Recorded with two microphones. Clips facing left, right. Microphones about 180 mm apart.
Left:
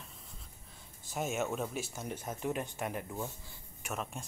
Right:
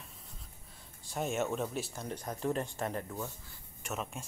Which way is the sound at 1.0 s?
Centre (ahead or behind).